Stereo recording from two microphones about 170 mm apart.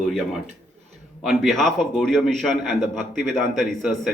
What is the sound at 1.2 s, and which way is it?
Speech, centre (ahead or behind).